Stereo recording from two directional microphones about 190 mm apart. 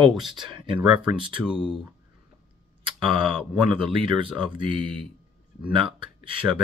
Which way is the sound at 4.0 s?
25° right (ahead or behind).